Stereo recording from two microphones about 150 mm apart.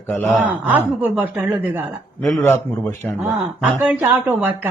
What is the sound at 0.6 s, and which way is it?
A man's voice, 10° right (ahead or behind).